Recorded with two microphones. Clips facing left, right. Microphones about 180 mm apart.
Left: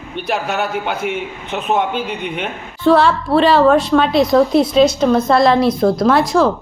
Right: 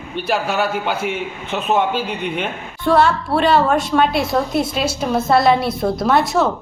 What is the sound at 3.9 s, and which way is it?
Speech, 5° right (ahead or behind).